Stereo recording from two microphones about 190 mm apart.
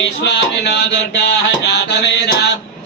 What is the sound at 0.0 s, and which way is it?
Mantra, 65° left (ahead or behind).